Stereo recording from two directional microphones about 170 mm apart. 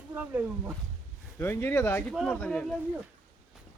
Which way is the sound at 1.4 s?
15° left (ahead or behind).